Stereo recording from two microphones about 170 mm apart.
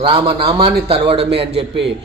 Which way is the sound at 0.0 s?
30° right (ahead or behind).